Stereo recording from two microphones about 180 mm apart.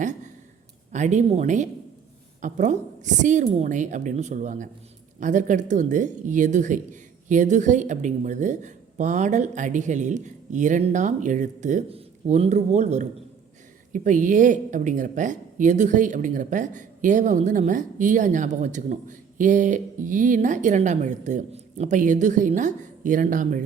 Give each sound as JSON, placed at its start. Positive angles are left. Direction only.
{"t": 0.9, "sound": "a woman's voice", "side_deg": -40}